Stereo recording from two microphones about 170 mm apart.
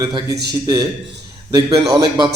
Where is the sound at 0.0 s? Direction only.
20° right (ahead or behind).